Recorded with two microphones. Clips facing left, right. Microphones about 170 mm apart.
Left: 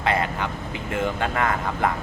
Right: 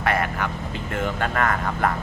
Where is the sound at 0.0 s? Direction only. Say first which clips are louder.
Even; 20° left (ahead or behind).